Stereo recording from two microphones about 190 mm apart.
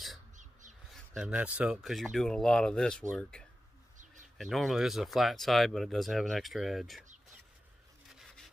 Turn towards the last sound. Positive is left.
turn(degrees=0)  # may be behind; listen again after turning